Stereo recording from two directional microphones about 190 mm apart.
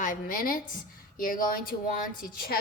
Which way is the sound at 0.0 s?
45° left (ahead or behind).